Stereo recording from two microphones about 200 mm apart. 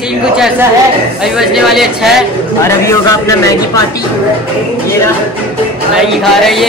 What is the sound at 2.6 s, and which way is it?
Speech, 15° left (ahead or behind).